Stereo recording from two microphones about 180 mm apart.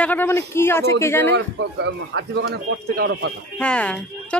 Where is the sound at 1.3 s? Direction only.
75° right (ahead or behind).